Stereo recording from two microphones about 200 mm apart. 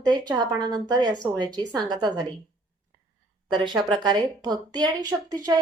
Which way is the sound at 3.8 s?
20° right (ahead or behind).